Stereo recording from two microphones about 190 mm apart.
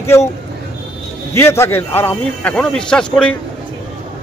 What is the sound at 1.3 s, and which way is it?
A man's voice, 15° left (ahead or behind).